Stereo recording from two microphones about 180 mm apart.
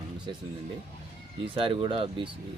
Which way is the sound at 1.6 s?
30° right (ahead or behind).